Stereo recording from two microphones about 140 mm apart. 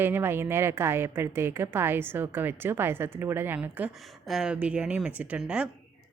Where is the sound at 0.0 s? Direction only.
15° right (ahead or behind).